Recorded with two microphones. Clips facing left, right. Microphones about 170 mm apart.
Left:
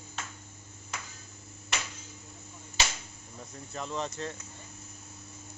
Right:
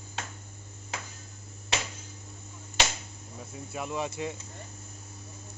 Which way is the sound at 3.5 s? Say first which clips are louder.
Right 2 dB; 10° right (ahead or behind).